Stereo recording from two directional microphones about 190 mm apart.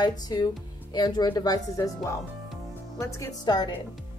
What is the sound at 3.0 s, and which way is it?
Speech, 20° left (ahead or behind).